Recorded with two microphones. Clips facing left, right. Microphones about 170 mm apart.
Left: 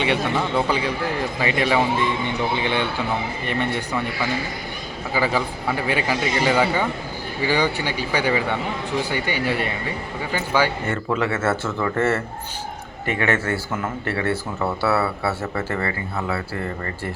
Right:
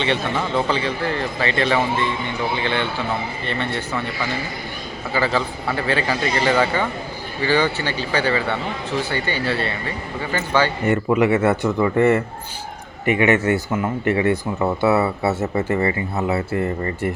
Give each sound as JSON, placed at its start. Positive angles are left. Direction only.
{"t": 0.0, "sound": "speech", "side_deg": 10}
{"t": 3.4, "sound": "speech", "side_deg": 15}
{"t": 5.1, "sound": "speech", "side_deg": 10}
{"t": 10.8, "sound": "speech", "side_deg": -20}